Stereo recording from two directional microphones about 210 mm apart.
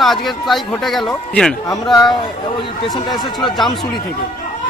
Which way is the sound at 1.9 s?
20° left (ahead or behind).